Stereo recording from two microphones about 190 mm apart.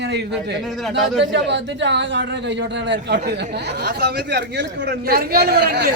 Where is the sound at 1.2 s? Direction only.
65° right (ahead or behind).